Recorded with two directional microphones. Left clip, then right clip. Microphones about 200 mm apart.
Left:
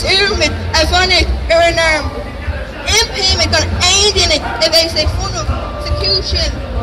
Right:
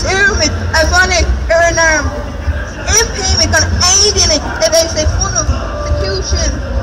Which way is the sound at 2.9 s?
40° left (ahead or behind).